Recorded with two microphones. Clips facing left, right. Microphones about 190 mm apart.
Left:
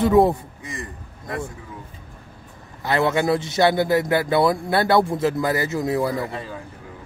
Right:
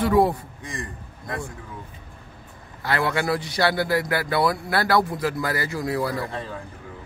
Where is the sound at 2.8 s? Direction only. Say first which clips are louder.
Left 4 dB; 20° left (ahead or behind).